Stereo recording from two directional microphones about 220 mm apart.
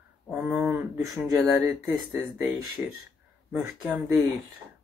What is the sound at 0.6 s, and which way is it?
Speech, 10° right (ahead or behind).